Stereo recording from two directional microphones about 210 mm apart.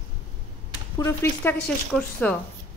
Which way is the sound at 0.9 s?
10° left (ahead or behind).